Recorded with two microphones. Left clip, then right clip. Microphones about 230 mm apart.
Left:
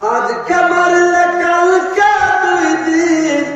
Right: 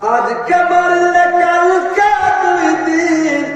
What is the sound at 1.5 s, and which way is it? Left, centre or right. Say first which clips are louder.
Music: even; right.